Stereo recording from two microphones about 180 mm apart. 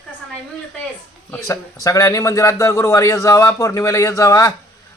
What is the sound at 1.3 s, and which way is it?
A man's voice, 15° left (ahead or behind).